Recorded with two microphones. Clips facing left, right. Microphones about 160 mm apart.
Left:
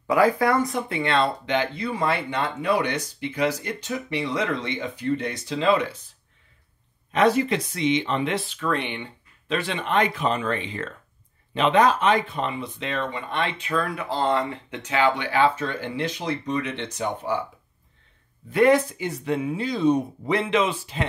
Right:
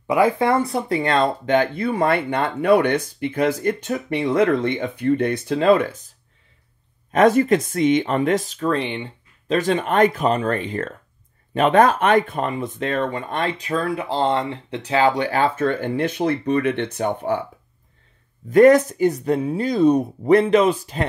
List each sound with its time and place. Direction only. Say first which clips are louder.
0.0 s speech: right 2 dB; 20° right (ahead or behind)
9.5 s speech: right 6 dB; 45° right (ahead or behind)
18.5 s speech: right 6 dB; 45° right (ahead or behind)